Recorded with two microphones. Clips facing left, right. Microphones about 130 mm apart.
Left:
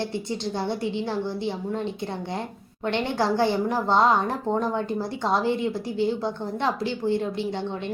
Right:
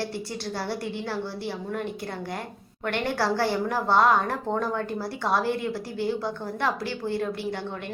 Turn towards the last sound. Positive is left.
turn(degrees=20)  # may be behind; listen again after turning